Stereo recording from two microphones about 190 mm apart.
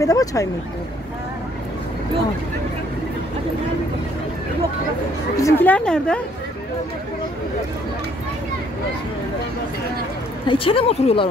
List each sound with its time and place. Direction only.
0.0 s speech: 20° left (ahead or behind)
5.4 s a woman's voice: 10° left (ahead or behind)
10.4 s speech: 25° left (ahead or behind)